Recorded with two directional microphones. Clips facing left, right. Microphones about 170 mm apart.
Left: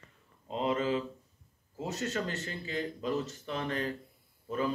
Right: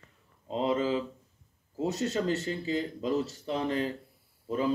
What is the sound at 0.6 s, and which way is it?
Speech, 30° right (ahead or behind).